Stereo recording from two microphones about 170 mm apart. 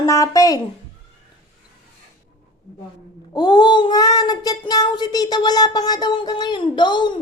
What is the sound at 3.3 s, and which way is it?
Child singing, 25° left (ahead or behind).